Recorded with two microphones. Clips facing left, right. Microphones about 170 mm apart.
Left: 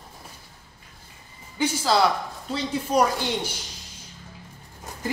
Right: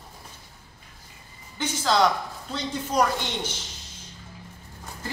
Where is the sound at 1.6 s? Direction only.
10° left (ahead or behind).